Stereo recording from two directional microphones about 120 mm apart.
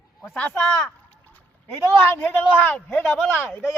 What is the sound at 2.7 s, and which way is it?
Speech, 20° left (ahead or behind).